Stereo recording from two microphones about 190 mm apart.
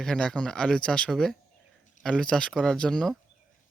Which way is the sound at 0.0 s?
5° left (ahead or behind).